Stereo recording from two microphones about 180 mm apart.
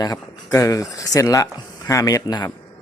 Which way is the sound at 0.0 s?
20° left (ahead or behind).